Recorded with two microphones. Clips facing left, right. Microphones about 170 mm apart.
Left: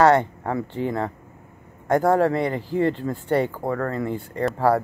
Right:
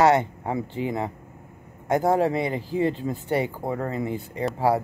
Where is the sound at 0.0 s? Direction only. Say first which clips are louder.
Left 2 dB; 15° right (ahead or behind).